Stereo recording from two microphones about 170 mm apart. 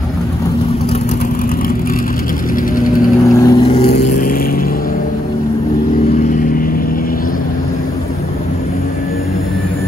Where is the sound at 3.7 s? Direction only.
70° left (ahead or behind).